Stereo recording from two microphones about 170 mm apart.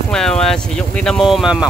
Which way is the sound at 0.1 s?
5° left (ahead or behind).